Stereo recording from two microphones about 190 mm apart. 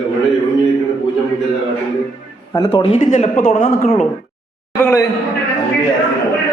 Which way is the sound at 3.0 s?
45° left (ahead or behind).